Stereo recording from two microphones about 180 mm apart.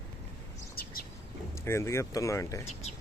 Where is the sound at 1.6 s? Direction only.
15° left (ahead or behind).